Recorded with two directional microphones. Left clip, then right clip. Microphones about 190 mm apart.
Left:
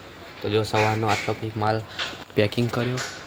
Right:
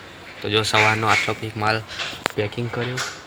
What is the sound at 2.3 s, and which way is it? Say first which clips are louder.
Speech: left 3 dB; 65° left (ahead or behind).